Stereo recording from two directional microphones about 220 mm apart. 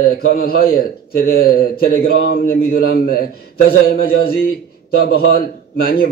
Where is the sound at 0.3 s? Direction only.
45° left (ahead or behind).